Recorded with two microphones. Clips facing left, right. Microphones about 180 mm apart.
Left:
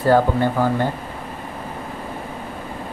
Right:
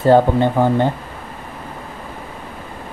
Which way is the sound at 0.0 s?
25° right (ahead or behind).